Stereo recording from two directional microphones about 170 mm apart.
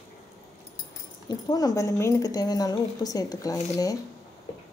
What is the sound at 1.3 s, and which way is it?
Speech, 20° left (ahead or behind).